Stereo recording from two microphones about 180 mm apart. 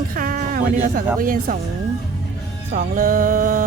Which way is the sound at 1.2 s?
50° right (ahead or behind).